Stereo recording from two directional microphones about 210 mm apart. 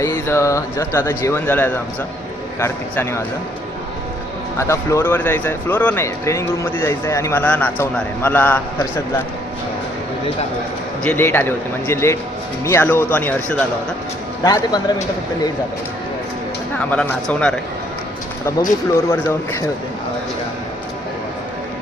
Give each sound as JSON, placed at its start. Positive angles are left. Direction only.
{"t": 0.0, "sound": "speech", "side_deg": 15}
{"t": 4.5, "sound": "speech", "side_deg": 15}
{"t": 11.0, "sound": "speech", "side_deg": 10}
{"t": 14.4, "sound": "speech", "side_deg": 20}
{"t": 16.7, "sound": "speech", "side_deg": 5}
{"t": 19.0, "sound": "speech", "side_deg": 10}